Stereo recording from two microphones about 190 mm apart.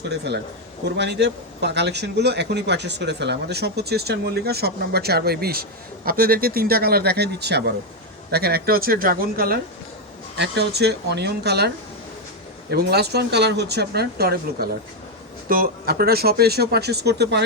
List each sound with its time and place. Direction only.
0.9 s speech: 65° right (ahead or behind)
10.3 s speech: 65° right (ahead or behind)
12.7 s speech: 60° right (ahead or behind)